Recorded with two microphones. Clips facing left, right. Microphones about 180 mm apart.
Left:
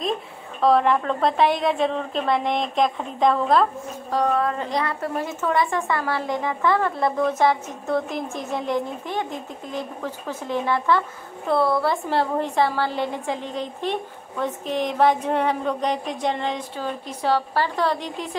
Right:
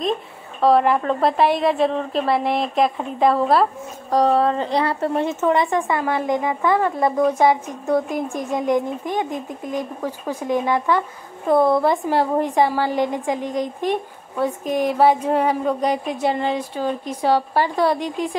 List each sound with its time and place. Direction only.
0.6 s a woman's voice: centre (ahead or behind)
4.1 s a woman's voice: 35° right (ahead or behind); by 18.4 s 10° right (ahead or behind)